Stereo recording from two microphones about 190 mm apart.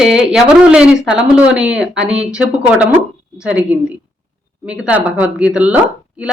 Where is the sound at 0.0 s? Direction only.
5° right (ahead or behind).